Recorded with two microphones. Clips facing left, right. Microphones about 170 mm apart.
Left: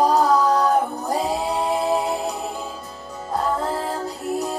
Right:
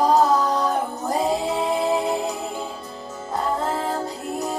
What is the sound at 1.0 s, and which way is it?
Music, centre (ahead or behind).